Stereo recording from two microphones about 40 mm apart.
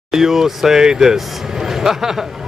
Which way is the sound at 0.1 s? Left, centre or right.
Centre.